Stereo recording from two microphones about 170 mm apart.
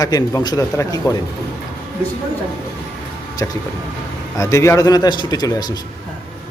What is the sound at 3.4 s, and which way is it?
A man's voice, 20° left (ahead or behind).